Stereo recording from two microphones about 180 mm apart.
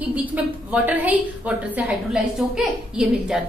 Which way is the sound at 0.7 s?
10° right (ahead or behind).